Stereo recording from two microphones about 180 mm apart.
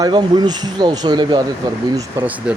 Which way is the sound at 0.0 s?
25° right (ahead or behind).